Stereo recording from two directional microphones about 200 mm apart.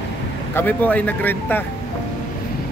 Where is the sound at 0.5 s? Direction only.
10° left (ahead or behind).